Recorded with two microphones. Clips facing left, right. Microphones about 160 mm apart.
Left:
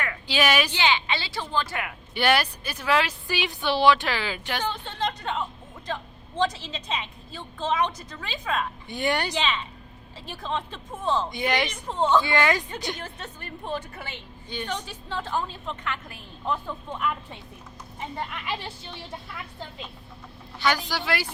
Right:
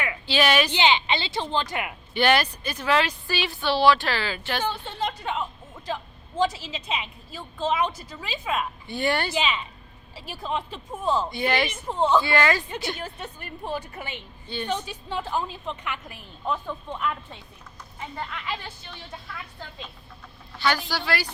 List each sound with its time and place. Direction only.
0.3 s speech: 10° left (ahead or behind)
0.8 s a woman's voice: 20° right (ahead or behind)
2.1 s speech: 10° left (ahead or behind)
4.6 s a woman's voice: 10° right (ahead or behind)
8.9 s speech: 15° left (ahead or behind)
9.3 s a woman's voice: 10° right (ahead or behind)
11.3 s speech: 15° left (ahead or behind)
11.7 s a woman's voice: 10° right (ahead or behind)
12.2 s speech: 15° left (ahead or behind)
13.0 s a woman's voice: 10° right (ahead or behind)
16.6 s speech: 5° left (ahead or behind)
18.1 s a woman's voice: 20° left (ahead or behind)
20.6 s speech: 20° left (ahead or behind)